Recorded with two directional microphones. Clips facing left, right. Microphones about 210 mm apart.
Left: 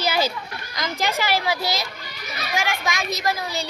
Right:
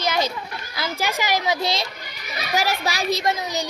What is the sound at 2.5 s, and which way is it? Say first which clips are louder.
Speech: right 2 dB; 35° right (ahead or behind).